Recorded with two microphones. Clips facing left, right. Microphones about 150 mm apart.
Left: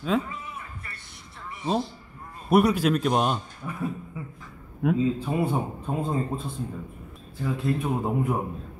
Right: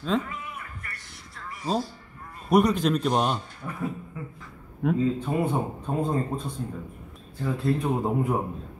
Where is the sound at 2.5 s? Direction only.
5° left (ahead or behind).